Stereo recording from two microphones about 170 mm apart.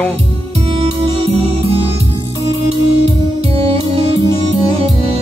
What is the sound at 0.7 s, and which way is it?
Music, 35° right (ahead or behind).